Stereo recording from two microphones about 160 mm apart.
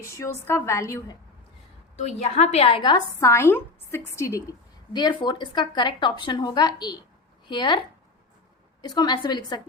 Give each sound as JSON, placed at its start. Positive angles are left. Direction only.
{"t": 0.0, "sound": "a woman's voice", "side_deg": 20}
{"t": 2.0, "sound": "a woman's voice", "side_deg": 45}
{"t": 3.2, "sound": "a woman's voice", "side_deg": 15}
{"t": 4.9, "sound": "speech", "side_deg": 30}